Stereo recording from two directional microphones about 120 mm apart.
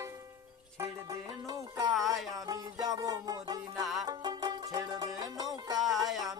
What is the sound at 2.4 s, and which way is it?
Music, 30° right (ahead or behind).